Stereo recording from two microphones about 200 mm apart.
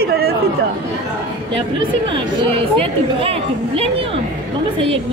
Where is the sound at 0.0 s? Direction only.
50° right (ahead or behind).